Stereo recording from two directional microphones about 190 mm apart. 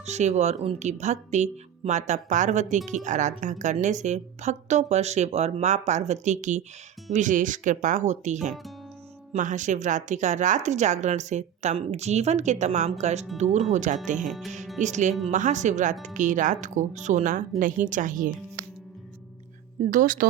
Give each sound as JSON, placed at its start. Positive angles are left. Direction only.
{"t": 0.0, "sound": "speech", "side_deg": -35}
{"t": 14.3, "sound": "speech", "side_deg": 0}
{"t": 14.8, "sound": "speech", "side_deg": -40}
{"t": 19.8, "sound": "speech", "side_deg": -45}